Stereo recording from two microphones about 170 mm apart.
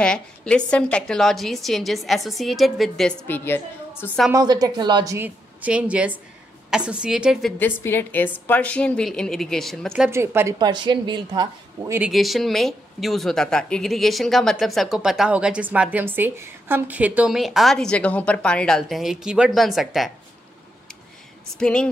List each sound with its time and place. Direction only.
0.0 s a woman's voice: 5° left (ahead or behind)
4.3 s a woman's voice: 20° right (ahead or behind); by 7.5 s 5° right (ahead or behind)
7.5 s a woman's voice: 10° left (ahead or behind)
10.1 s a woman's voice: 15° right (ahead or behind)
10.6 s a woman's voice: 25° right (ahead or behind)
12.0 s a woman's voice: centre (ahead or behind)
21.5 s a woman's voice: 5° left (ahead or behind)